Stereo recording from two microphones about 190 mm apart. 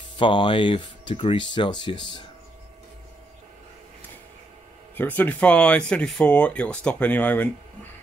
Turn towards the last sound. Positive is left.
turn(degrees=10)  # may be behind; listen again after turning